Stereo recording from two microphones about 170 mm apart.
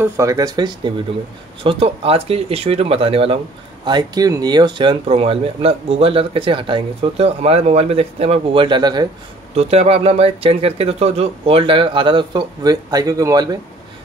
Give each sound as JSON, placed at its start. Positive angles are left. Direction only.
{"t": 0.0, "sound": "speech", "side_deg": -20}
{"t": 9.6, "sound": "speech", "side_deg": -35}